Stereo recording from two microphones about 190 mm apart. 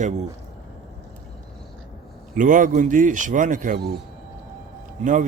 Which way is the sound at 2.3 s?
45° right (ahead or behind).